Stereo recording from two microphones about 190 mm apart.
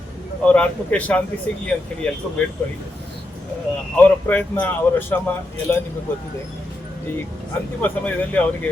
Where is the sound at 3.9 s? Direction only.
10° left (ahead or behind).